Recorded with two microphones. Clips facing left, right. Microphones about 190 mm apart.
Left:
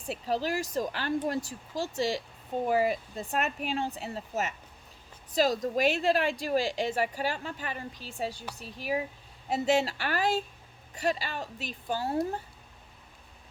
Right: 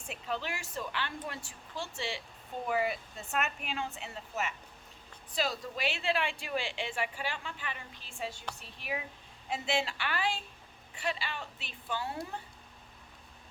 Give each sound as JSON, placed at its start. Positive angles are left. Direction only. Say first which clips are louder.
{"t": 0.0, "sound": "a woman's voice", "louder": "left 7 dB", "side_deg": 35}